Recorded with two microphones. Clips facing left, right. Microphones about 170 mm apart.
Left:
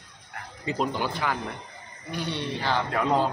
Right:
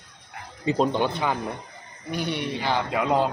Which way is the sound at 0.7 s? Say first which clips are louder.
Right 5 dB; 25° right (ahead or behind).